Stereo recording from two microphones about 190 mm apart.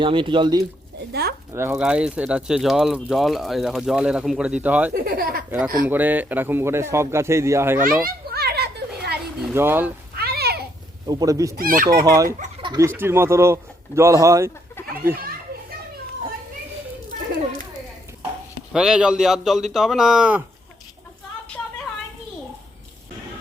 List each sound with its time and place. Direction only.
0.0 s speech: 25° right (ahead or behind)
1.5 s speech: 10° right (ahead or behind)
5.0 s speech: 50° right (ahead or behind)
5.5 s a man's voice: 5° right (ahead or behind)
8.0 s children playing: 55° right (ahead or behind)
9.4 s a man's voice: 10° right (ahead or behind)
10.2 s a sound: 55° right (ahead or behind)
11.0 s speech: 20° right (ahead or behind)
11.5 s speech: 50° right (ahead or behind)
12.0 s a man's voice: 20° right (ahead or behind)
14.8 s a sound: 10° left (ahead or behind)
18.7 s speech: 5° right (ahead or behind)